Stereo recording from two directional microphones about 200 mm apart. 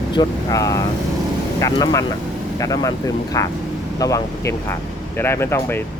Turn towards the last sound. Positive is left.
turn(degrees=10)  # may be behind; listen again after turning